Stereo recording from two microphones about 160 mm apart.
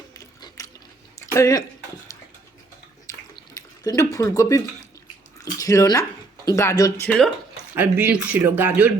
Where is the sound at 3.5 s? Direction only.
20° left (ahead or behind).